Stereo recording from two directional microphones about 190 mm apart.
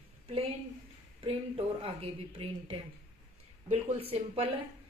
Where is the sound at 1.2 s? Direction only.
30° right (ahead or behind).